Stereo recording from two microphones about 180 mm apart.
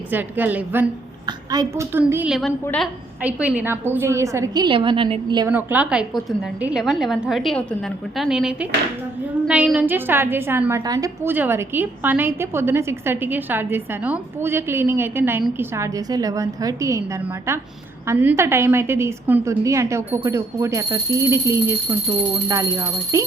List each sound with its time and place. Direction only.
0.1 s a woman's voice: 10° right (ahead or behind); by 2.9 s 5° left (ahead or behind)
3.2 s a woman's voice: 10° right (ahead or behind); by 5.5 s 30° right (ahead or behind)
5.5 s a woman's voice: 10° right (ahead or behind)
18.1 s a woman's voice: 15° right (ahead or behind)
23.1 s a woman's voice: 15° right (ahead or behind)